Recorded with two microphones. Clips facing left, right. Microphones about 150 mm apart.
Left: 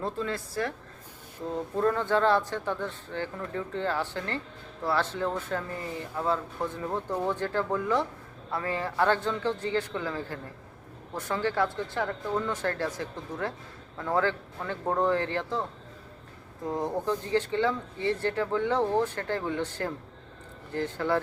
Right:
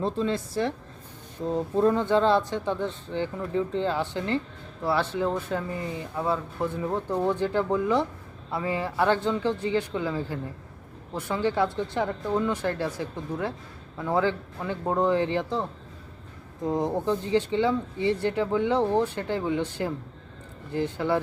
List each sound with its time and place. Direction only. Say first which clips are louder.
0.0 s speech: right 5 dB; 20° right (ahead or behind)
16.6 s speech: right 4 dB; 15° right (ahead or behind)